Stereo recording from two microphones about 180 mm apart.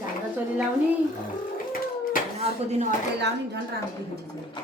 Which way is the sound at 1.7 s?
50° left (ahead or behind).